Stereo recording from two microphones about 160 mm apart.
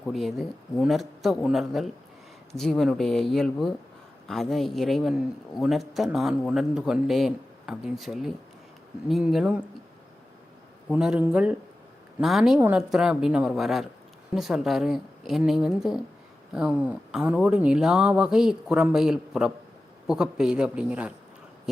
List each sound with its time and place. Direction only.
0.0 s speech: centre (ahead or behind)
10.9 s speech: 5° right (ahead or behind)
12.5 s speech: 15° right (ahead or behind)